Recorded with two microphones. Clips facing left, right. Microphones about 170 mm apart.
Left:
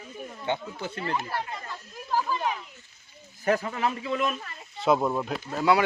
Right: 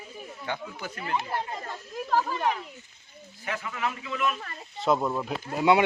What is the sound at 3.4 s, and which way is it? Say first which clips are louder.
Speech: left 7 dB; 40° left (ahead or behind).